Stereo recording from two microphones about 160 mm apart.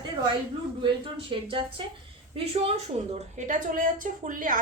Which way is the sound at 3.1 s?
50° right (ahead or behind).